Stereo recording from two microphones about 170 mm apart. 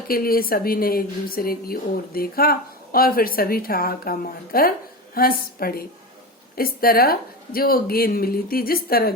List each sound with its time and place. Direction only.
0.1 s speech: 60° left (ahead or behind)